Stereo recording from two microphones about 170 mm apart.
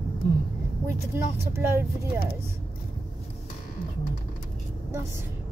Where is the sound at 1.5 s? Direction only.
15° right (ahead or behind).